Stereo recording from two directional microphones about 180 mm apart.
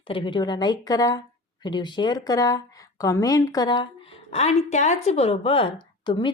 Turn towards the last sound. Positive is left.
turn(degrees=25)  # may be behind; listen again after turning